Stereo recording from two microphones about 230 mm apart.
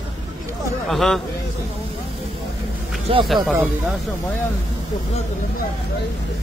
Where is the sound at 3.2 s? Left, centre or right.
Centre.